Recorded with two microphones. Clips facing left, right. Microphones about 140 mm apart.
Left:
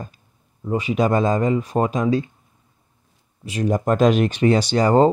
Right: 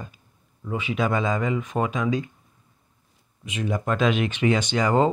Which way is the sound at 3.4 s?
40° left (ahead or behind).